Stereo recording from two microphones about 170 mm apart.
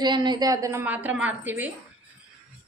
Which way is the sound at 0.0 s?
25° right (ahead or behind).